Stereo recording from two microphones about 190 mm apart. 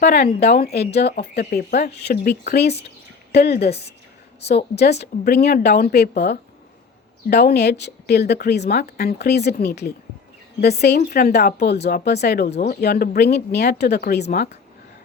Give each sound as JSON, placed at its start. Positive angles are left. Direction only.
{"t": 0.0, "sound": "speech", "side_deg": 55}
{"t": 3.7, "sound": "a woman's voice", "side_deg": 35}
{"t": 4.8, "sound": "speech", "side_deg": 60}